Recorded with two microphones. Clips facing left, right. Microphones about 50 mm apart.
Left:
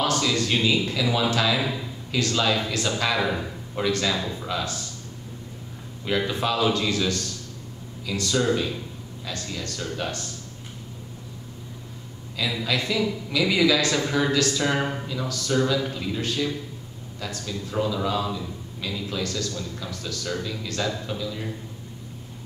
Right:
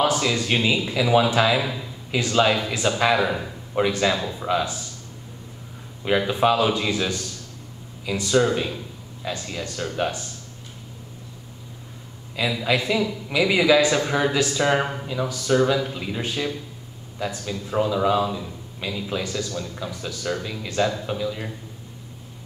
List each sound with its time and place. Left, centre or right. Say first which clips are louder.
0.0 s a man's voice: right 2 dB; centre
1.6 s a man's voice: even; centre
2.0 s a man's voice: right 4 dB; right
3.2 s a man's voice: right 2 dB; centre
3.7 s a man's voice: right 4 dB; right
6.0 s a man's voice: right 5 dB; centre
12.4 s a man's voice: right 4 dB; right